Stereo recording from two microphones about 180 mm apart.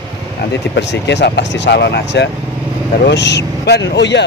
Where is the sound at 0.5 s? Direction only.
75° left (ahead or behind).